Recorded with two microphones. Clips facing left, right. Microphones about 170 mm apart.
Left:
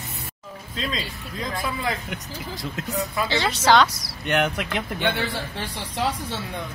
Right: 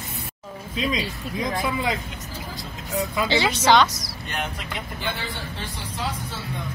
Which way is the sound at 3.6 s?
Centre (ahead or behind).